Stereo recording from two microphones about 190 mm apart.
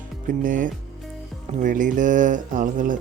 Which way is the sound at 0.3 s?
45° right (ahead or behind).